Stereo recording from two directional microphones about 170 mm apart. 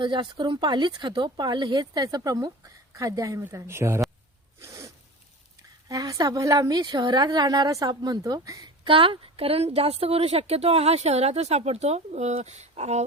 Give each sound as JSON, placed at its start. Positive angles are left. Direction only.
{"t": 0.0, "sound": "speech", "side_deg": -30}
{"t": 4.6, "sound": "zipper", "side_deg": -15}
{"t": 5.9, "sound": "a woman's voice", "side_deg": -20}